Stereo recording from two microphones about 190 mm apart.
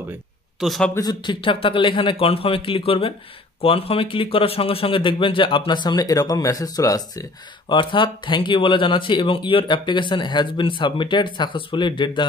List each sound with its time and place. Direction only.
0.6 s a man's voice: centre (ahead or behind)
0.9 s a man's voice: 20° left (ahead or behind)